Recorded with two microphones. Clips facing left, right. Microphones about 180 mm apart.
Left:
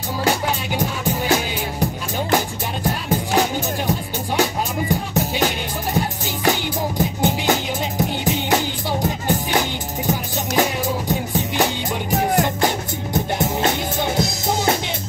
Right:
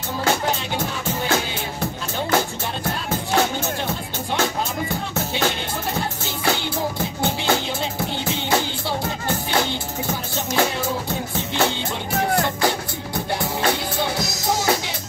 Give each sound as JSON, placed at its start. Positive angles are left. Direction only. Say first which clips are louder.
{"t": 0.7, "sound": "music", "louder": "left 3 dB", "side_deg": 15}